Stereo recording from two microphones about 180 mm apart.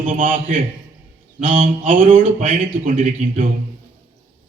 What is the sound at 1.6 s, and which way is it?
Speech, 45° right (ahead or behind).